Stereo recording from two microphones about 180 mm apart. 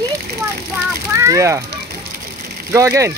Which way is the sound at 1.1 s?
15° right (ahead or behind).